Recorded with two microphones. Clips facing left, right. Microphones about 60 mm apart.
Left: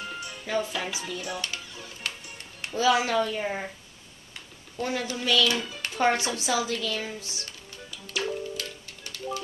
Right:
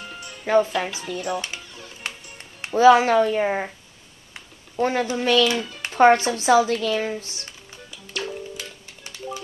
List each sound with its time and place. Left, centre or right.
0.0 s music: centre
0.5 s speech: right
1.0 s dishes: centre
2.0 s music: right
2.7 s speech: right
4.7 s speech: right
8.1 s music: centre
8.5 s music: centre